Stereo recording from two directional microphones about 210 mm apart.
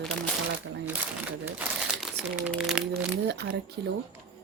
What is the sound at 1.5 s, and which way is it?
Crumpling, 5° right (ahead or behind).